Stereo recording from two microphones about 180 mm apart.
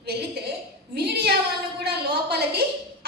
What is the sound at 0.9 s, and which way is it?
Speech, 65° right (ahead or behind).